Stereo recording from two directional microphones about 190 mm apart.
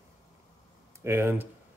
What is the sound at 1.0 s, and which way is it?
Speech, 10° right (ahead or behind).